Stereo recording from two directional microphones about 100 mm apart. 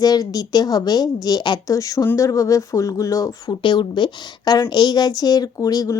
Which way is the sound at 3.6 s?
50° left (ahead or behind).